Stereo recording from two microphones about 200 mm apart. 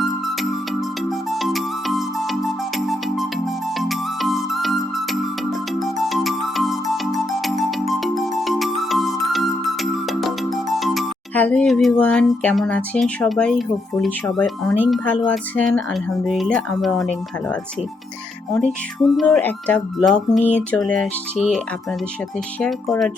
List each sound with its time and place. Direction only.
1.3 s music: centre (ahead or behind)
14.8 s speech: 5° left (ahead or behind)
18.5 s speech: 5° left (ahead or behind)
22.6 s speech: 5° left (ahead or behind)